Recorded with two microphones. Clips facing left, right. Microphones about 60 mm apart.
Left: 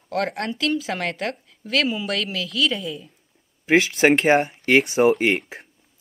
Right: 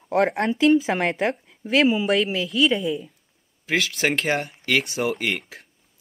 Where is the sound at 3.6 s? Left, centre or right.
Left.